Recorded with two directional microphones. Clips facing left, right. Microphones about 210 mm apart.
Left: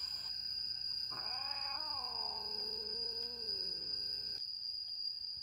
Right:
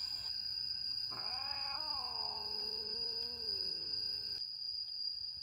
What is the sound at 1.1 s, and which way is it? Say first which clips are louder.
Cat: even; centre (ahead or behind).